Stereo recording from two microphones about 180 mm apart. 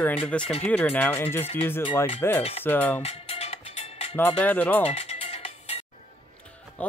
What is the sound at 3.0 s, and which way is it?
Music, 35° left (ahead or behind).